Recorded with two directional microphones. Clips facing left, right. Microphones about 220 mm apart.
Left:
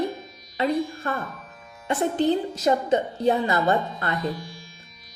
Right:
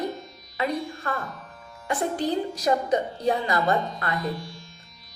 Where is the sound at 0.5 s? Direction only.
25° left (ahead or behind).